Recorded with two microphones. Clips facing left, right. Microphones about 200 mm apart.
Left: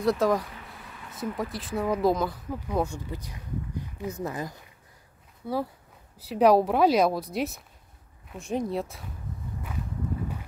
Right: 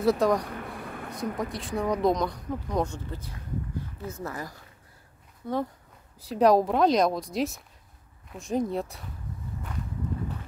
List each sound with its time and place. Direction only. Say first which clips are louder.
0.0 s a woman's voice: right 1 dB; centre (ahead or behind)
0.5 s a sound: right 9 dB; 55° right (ahead or behind)
1.2 s speech: even; centre (ahead or behind); by 4.6 s 20° left (ahead or behind)
5.4 s a woman's voice: even; 5° left (ahead or behind)